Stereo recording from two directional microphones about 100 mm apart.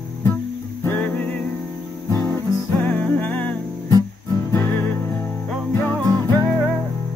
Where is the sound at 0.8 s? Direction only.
15° left (ahead or behind).